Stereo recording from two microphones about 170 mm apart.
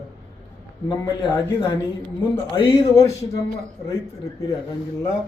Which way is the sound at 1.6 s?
30° left (ahead or behind).